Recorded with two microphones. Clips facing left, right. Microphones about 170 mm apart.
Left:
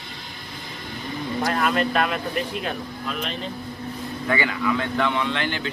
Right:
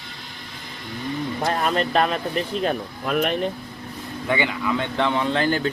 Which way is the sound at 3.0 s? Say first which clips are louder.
Right 9 dB; 55° right (ahead or behind).